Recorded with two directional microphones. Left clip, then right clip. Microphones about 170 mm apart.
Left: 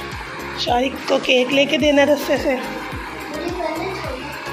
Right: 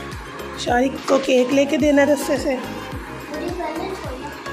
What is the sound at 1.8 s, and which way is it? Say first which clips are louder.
Speech: left 1 dB; 20° right (ahead or behind).